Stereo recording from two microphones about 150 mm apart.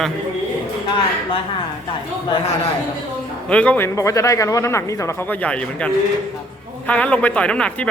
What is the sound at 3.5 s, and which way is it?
A man's voice, 10° left (ahead or behind).